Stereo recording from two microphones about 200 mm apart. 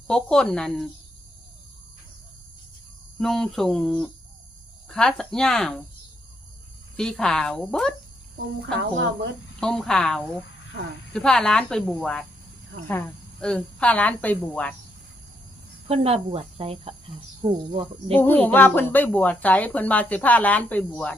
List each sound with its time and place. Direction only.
0.1 s speech: 5° left (ahead or behind)
3.2 s speech: centre (ahead or behind)
6.9 s speech: 5° left (ahead or behind)
9.6 s speech: 5° left (ahead or behind)
15.9 s speech: 30° right (ahead or behind)
18.1 s speech: 10° left (ahead or behind)